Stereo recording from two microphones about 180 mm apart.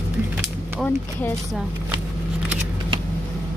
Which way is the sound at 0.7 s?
5° left (ahead or behind).